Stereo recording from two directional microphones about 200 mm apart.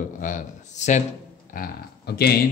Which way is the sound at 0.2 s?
40° left (ahead or behind).